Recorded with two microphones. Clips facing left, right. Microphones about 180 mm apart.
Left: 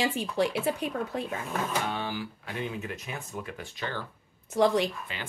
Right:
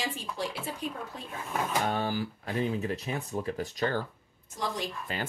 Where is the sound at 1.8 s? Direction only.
40° right (ahead or behind).